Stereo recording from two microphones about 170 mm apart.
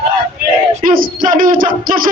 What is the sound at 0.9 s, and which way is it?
Music, 55° right (ahead or behind).